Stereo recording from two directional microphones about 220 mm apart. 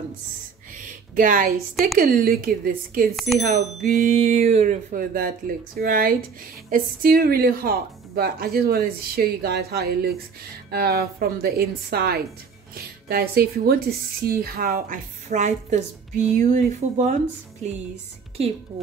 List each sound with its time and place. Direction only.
1.1 s a woman's voice: 40° right (ahead or behind)
3.2 s speech: centre (ahead or behind)
3.4 s a woman's voice: 35° right (ahead or behind)